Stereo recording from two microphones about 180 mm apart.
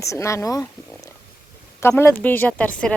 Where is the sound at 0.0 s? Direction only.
15° left (ahead or behind).